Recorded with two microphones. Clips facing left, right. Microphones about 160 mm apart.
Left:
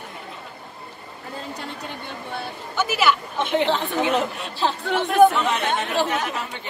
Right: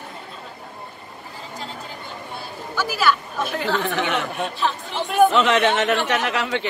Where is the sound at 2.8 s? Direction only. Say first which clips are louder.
Even; 20° left (ahead or behind).